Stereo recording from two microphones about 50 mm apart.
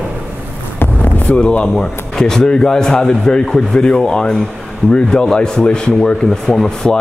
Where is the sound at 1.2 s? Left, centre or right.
Left.